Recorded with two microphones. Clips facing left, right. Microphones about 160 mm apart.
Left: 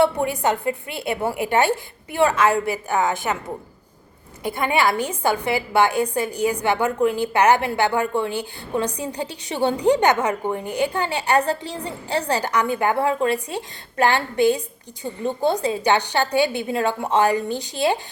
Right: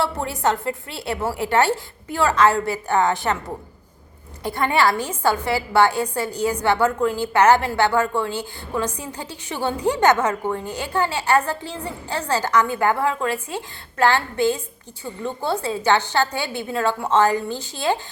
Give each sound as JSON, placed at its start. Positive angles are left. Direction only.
{"t": 0.0, "sound": "a woman's voice", "side_deg": 15}
{"t": 4.4, "sound": "a woman's voice", "side_deg": 15}